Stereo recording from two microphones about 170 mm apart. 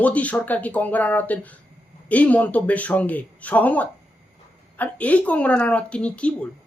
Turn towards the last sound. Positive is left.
turn(degrees=5)  # may be behind; listen again after turning